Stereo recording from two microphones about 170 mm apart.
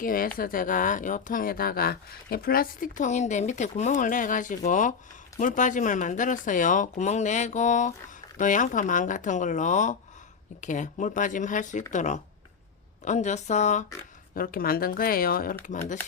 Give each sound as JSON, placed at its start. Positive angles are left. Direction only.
{"t": 0.0, "sound": "speech", "side_deg": 55}
{"t": 14.3, "sound": "speech", "side_deg": 60}
{"t": 15.6, "sound": "speech", "side_deg": 45}